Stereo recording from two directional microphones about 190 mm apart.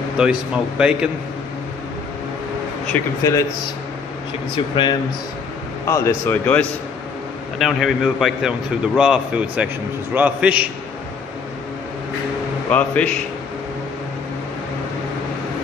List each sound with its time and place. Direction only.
0.2 s a man's voice: 5° right (ahead or behind)
2.9 s speech: 15° left (ahead or behind)
5.9 s a man's voice: 15° left (ahead or behind); by 10.7 s 10° right (ahead or behind)
12.6 s speech: 5° left (ahead or behind)